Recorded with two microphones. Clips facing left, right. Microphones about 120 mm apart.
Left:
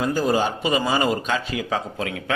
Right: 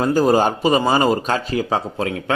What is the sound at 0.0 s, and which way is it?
A man's voice, 45° right (ahead or behind).